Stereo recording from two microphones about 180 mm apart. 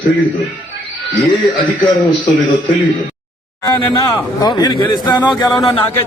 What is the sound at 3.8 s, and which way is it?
Speech, 25° left (ahead or behind).